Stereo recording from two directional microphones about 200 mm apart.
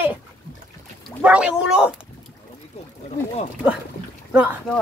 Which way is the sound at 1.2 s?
5° right (ahead or behind).